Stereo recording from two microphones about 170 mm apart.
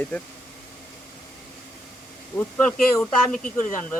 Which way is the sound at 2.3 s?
25° left (ahead or behind).